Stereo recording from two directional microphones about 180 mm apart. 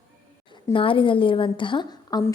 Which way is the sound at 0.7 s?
30° left (ahead or behind).